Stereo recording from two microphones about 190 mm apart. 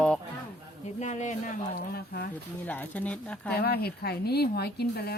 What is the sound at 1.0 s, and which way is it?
Speech, 40° left (ahead or behind).